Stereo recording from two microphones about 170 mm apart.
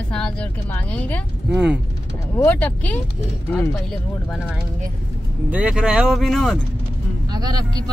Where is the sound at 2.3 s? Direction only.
10° left (ahead or behind).